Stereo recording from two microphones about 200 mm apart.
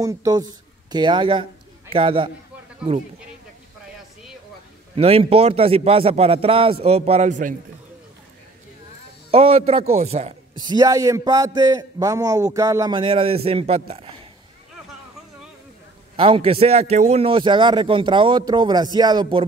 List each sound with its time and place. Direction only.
0.0 s speech: 20° right (ahead or behind)
4.9 s a man's voice: 30° right (ahead or behind)
9.3 s a man's voice: 30° right (ahead or behind)
10.7 s a man's voice: 20° right (ahead or behind)
16.2 s a man's voice: 25° right (ahead or behind)